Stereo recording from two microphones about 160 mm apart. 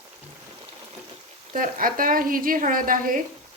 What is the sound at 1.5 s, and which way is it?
Speech, 60° right (ahead or behind).